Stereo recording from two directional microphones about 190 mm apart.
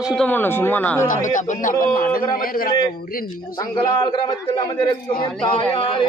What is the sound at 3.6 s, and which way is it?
Speech, 20° left (ahead or behind).